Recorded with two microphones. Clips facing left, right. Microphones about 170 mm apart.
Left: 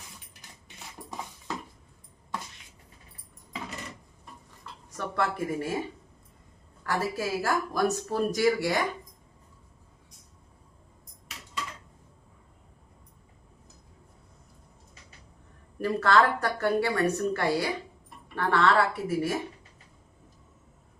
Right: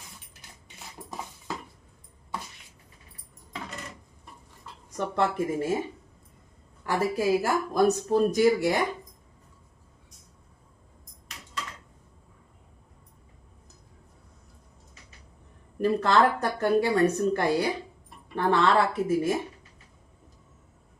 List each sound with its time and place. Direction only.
4.9 s speech: 20° right (ahead or behind)
6.8 s speech: 15° right (ahead or behind)
15.8 s speech: 20° right (ahead or behind)